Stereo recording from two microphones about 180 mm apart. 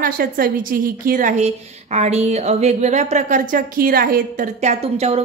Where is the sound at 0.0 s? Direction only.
50° right (ahead or behind).